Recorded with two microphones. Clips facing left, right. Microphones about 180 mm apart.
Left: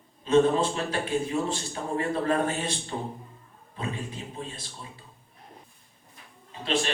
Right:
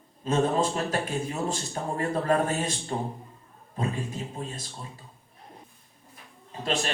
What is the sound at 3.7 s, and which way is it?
Speech, 45° right (ahead or behind).